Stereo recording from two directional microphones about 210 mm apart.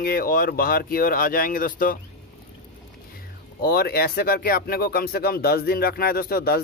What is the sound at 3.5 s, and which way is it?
Speech, 45° left (ahead or behind).